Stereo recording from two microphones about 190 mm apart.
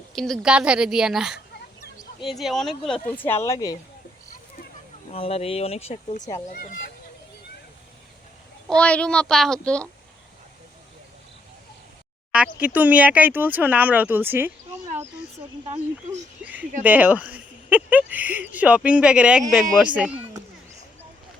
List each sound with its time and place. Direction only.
0.2 s a child's voice: centre (ahead or behind)
3.4 s speech: 20° left (ahead or behind)
5.1 s speech: 30° left (ahead or behind)
6.5 s speech: 45° left (ahead or behind)
8.6 s a child's voice: 5° left (ahead or behind)
12.5 s speech: 10° right (ahead or behind)
16.4 s a sound: 5° right (ahead or behind)
16.8 s a child's voice: 10° right (ahead or behind)